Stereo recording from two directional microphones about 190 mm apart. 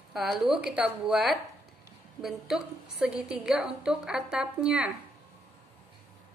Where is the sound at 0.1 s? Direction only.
Centre (ahead or behind).